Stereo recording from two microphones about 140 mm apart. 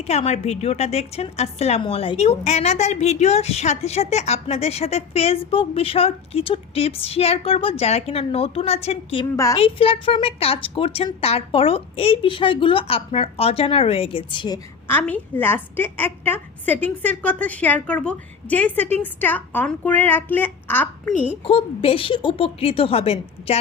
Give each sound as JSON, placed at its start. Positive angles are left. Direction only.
{"t": 0.0, "sound": "a woman's voice", "side_deg": 45}
{"t": 9.3, "sound": "a woman's voice", "side_deg": 25}
{"t": 9.6, "sound": "a woman's voice", "side_deg": 40}
{"t": 14.8, "sound": "a woman's voice", "side_deg": 15}
{"t": 21.4, "sound": "a woman's voice", "side_deg": 45}